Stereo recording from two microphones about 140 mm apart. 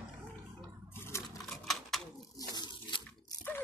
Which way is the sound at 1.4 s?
Centre (ahead or behind).